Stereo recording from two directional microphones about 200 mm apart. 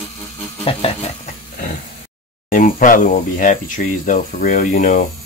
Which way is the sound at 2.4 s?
40° left (ahead or behind).